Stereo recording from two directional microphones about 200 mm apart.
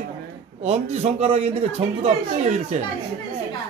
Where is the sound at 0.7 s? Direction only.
30° right (ahead or behind).